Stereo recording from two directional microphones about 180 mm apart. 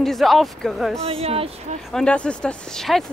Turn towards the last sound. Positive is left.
turn(degrees=0)  # may be behind; listen again after turning